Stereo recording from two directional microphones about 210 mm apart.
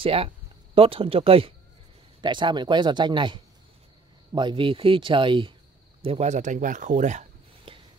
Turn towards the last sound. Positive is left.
turn(degrees=-30)  # may be behind; listen again after turning